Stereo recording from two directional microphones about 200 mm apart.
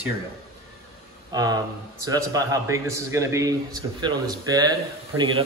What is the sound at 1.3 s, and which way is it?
A man's voice, 20° right (ahead or behind).